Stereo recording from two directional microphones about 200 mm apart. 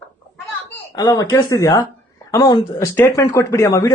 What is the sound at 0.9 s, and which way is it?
Speech, 20° left (ahead or behind).